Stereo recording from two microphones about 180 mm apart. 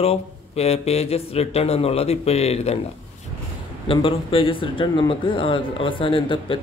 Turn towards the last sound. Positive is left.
turn(degrees=30)  # may be behind; listen again after turning